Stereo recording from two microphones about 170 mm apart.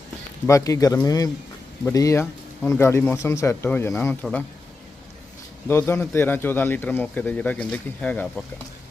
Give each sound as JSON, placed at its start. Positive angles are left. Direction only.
{"t": 0.4, "sound": "a man's voice", "side_deg": 20}
{"t": 5.6, "sound": "a man's voice", "side_deg": 15}